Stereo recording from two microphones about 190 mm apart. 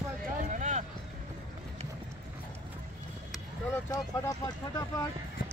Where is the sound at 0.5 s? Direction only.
40° right (ahead or behind).